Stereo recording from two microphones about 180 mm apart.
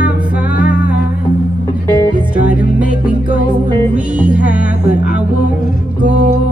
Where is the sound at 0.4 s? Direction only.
10° right (ahead or behind).